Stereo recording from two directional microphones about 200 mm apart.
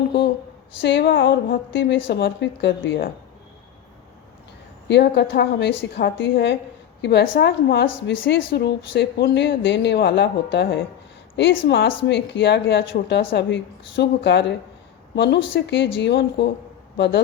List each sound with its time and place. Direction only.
0.8 s speech: 65° left (ahead or behind)
4.9 s speech: 60° left (ahead or behind)